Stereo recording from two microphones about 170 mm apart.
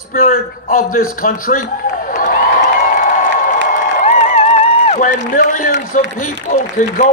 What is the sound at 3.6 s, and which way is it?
Crowd, 50° left (ahead or behind).